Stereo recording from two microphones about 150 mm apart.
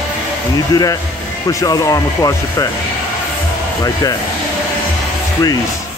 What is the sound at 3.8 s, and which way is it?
Speech, 25° left (ahead or behind).